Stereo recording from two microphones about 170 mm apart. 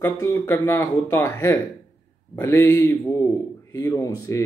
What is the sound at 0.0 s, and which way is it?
A man's voice, 15° left (ahead or behind).